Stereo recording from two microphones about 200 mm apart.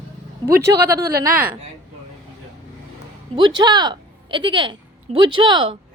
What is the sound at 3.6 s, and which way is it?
A woman's voice, 20° right (ahead or behind).